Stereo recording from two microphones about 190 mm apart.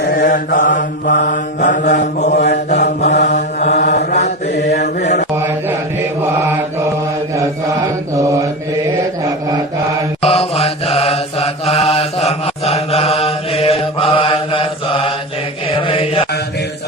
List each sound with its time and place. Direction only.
0.0 s mantra: 50° left (ahead or behind)
3.2 s mantra: 40° left (ahead or behind)
3.7 s mantra: 55° left (ahead or behind)
8.1 s mantra: 15° right (ahead or behind)
10.2 s mantra: 30° left (ahead or behind)